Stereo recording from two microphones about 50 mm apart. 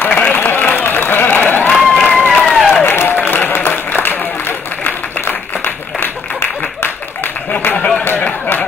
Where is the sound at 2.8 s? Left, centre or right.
Left.